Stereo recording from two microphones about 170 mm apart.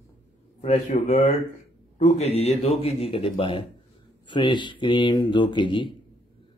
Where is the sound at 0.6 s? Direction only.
40° left (ahead or behind).